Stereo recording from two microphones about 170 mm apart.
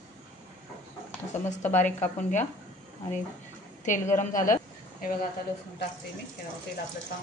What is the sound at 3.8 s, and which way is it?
Speech, 50° left (ahead or behind).